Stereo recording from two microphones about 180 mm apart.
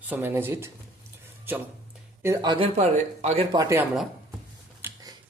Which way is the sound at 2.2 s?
20° right (ahead or behind).